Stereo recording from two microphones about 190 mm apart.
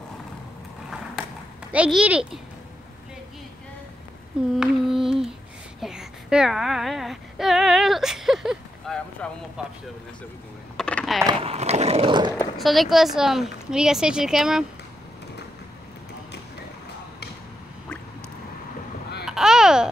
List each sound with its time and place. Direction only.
1.7 s a woman's voice: 5° right (ahead or behind)
4.6 s a sound: centre (ahead or behind)
9.6 s a woman's voice: 5° right (ahead or behind)
10.8 s typing: 5° left (ahead or behind)
11.2 s speech: 30° right (ahead or behind)
12.5 s a woman's voice: centre (ahead or behind)
19.2 s babbling: centre (ahead or behind)